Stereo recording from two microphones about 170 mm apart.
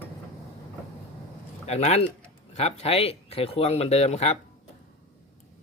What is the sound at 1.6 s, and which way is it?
Speech, 40° left (ahead or behind).